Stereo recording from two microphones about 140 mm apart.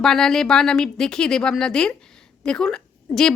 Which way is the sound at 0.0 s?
5° left (ahead or behind).